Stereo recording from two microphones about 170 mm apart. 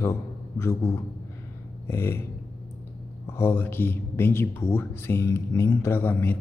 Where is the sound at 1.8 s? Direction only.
15° left (ahead or behind).